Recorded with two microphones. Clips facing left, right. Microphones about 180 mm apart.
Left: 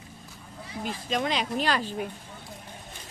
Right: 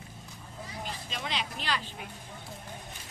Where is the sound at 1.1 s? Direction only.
50° left (ahead or behind).